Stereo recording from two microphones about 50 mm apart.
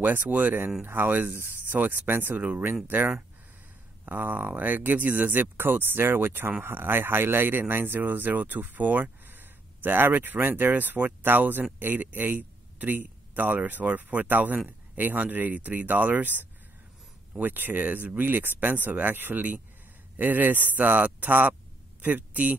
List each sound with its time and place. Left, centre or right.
0.0 s a man's voice: right